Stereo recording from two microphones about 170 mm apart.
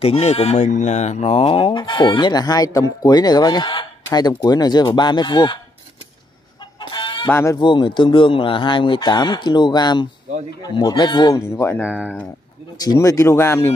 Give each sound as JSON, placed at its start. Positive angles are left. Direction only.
{"t": 0.0, "sound": "speech", "side_deg": 35}
{"t": 6.9, "sound": "chicken", "side_deg": 30}
{"t": 7.2, "sound": "speech", "side_deg": 15}
{"t": 7.5, "sound": "speech", "side_deg": 25}
{"t": 11.9, "sound": "speech", "side_deg": -5}
{"t": 12.7, "sound": "speech", "side_deg": 20}